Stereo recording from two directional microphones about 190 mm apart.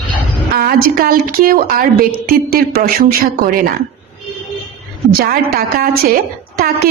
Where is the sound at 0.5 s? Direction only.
50° right (ahead or behind).